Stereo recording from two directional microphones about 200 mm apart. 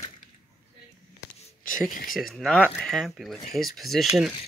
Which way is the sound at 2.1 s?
Centre (ahead or behind).